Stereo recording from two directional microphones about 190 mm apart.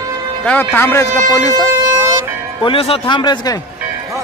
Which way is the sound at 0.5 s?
10° left (ahead or behind).